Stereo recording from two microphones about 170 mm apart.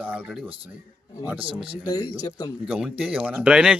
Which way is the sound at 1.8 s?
20° left (ahead or behind).